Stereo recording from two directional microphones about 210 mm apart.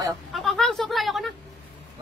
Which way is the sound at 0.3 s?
Centre (ahead or behind).